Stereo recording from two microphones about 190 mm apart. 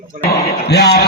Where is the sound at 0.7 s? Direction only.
60° left (ahead or behind).